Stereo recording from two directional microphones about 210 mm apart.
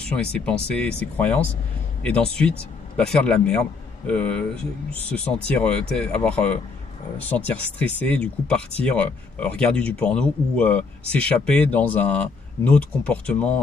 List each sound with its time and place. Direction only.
0.0 s speech: 5° left (ahead or behind)